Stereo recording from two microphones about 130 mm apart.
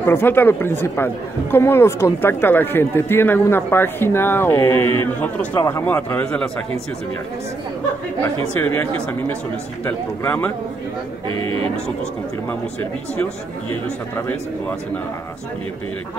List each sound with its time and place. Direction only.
0.0 s speech: 15° left (ahead or behind)
8.5 s speech: 15° left (ahead or behind)
11.2 s speech: 45° right (ahead or behind)